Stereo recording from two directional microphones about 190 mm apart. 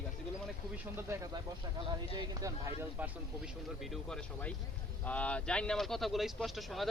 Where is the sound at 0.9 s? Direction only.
15° right (ahead or behind).